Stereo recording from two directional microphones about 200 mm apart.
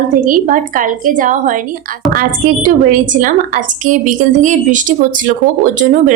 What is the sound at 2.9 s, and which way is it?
A woman's voice, 40° right (ahead or behind).